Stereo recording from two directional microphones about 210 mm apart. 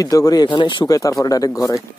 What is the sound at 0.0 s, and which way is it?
Speech, 15° left (ahead or behind).